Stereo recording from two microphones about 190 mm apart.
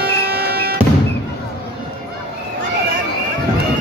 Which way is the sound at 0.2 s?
55° right (ahead or behind).